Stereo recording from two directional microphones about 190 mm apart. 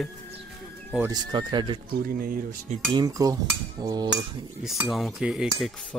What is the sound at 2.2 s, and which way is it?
Speech, 50° right (ahead or behind).